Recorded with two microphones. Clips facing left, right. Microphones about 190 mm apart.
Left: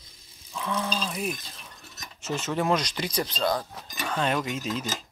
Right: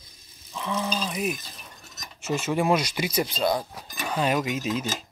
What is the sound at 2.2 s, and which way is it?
Speech, 10° right (ahead or behind).